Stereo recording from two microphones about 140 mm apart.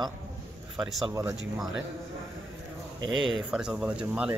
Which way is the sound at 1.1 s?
15° right (ahead or behind).